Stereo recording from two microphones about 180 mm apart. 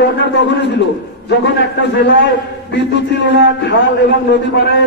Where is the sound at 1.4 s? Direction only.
70° left (ahead or behind).